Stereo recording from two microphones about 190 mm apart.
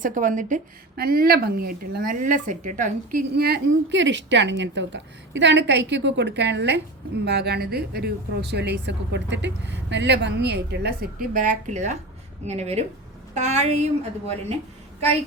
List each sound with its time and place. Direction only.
0.0 s a woman's voice: 45° right (ahead or behind)